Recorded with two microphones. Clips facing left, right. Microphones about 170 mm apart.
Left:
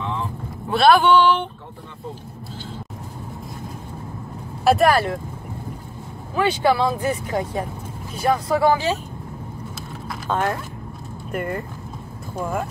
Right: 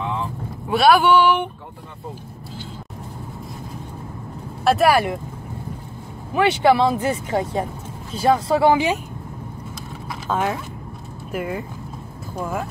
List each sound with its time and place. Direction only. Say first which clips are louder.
0.7 s speech: even; 10° right (ahead or behind)
4.6 s speech: even; 5° right (ahead or behind)
6.3 s speech: right 3 dB; 20° right (ahead or behind)
10.2 s speech: even; centre (ahead or behind)